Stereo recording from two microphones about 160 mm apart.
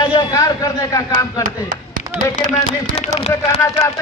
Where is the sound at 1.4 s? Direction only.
55° right (ahead or behind).